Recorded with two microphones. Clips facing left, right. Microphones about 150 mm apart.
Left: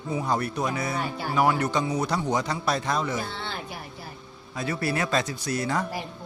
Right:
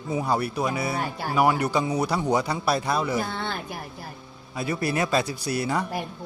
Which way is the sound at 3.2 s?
50° right (ahead or behind).